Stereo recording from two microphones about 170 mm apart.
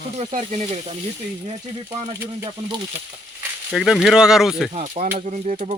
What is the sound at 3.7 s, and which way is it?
Speech, centre (ahead or behind).